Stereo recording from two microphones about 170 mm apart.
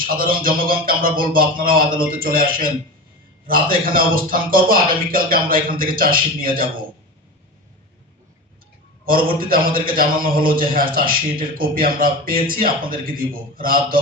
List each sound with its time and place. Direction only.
0.0 s a man's voice: 55° right (ahead or behind)
9.0 s a man's voice: 55° right (ahead or behind)